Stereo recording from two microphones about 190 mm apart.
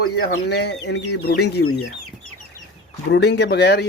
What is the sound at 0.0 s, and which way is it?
Speech, 60° left (ahead or behind).